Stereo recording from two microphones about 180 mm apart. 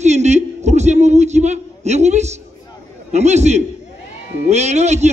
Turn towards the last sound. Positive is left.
turn(degrees=-40)  # may be behind; listen again after turning